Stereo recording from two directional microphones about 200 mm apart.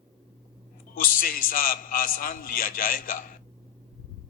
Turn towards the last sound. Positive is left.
turn(degrees=45)  # may be behind; listen again after turning